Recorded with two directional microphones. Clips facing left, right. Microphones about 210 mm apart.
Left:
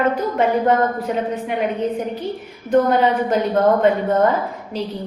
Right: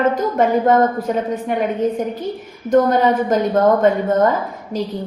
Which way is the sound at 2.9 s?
45° right (ahead or behind).